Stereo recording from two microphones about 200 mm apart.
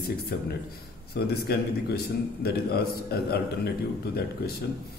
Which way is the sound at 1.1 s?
55° left (ahead or behind).